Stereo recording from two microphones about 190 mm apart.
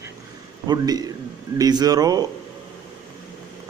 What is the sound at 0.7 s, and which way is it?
A man's voice, 20° right (ahead or behind).